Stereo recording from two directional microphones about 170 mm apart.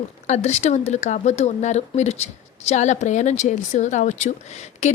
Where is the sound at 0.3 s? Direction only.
45° left (ahead or behind).